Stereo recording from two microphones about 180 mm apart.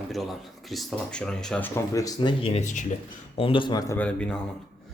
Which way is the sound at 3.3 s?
30° left (ahead or behind).